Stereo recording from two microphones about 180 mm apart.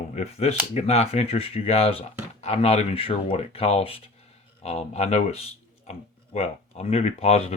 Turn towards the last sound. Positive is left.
turn(degrees=35)  # may be behind; listen again after turning